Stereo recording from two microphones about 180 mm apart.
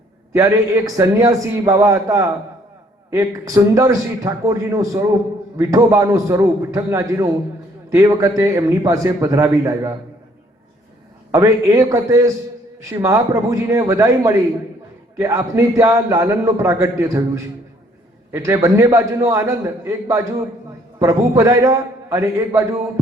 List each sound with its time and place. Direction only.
0.3 s a man's voice: 15° right (ahead or behind)
11.3 s a man's voice: 15° right (ahead or behind)
18.3 s a man's voice: 15° right (ahead or behind)